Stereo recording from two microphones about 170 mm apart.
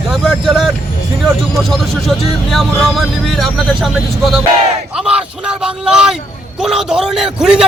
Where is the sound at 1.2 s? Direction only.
Centre (ahead or behind).